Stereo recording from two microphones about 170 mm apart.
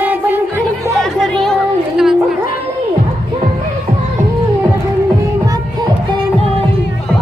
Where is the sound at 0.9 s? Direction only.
Centre (ahead or behind).